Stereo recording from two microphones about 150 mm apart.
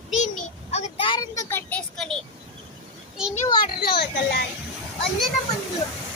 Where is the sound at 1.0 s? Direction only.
35° left (ahead or behind).